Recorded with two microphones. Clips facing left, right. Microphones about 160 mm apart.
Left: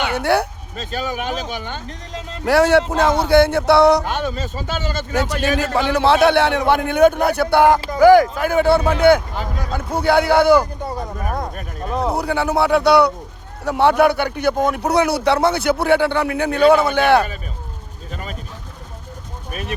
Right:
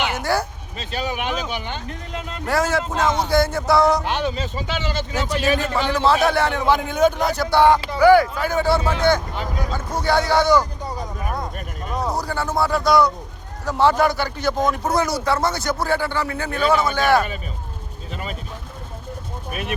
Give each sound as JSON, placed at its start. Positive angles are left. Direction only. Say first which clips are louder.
{"t": 0.0, "sound": "speech", "louder": "left 4 dB", "side_deg": 65}
{"t": 0.8, "sound": "speech", "louder": "left 1 dB", "side_deg": 45}
{"t": 2.4, "sound": "speech", "louder": "left 8 dB", "side_deg": 70}
{"t": 4.0, "sound": "speech", "louder": "even", "side_deg": 45}
{"t": 5.1, "sound": "speech", "louder": "left 2 dB", "side_deg": 70}
{"t": 7.8, "sound": "speech", "louder": "left 3 dB", "side_deg": 40}
{"t": 8.4, "sound": "speech", "louder": "left 4 dB", "side_deg": 60}
{"t": 11.2, "sound": "a sound", "louder": "left 3 dB", "side_deg": 45}
{"t": 12.1, "sound": "speech", "louder": "left 5 dB", "side_deg": 65}
{"t": 18.1, "sound": "speech", "louder": "even", "side_deg": 45}
{"t": 19.5, "sound": "speech", "louder": "even", "side_deg": 40}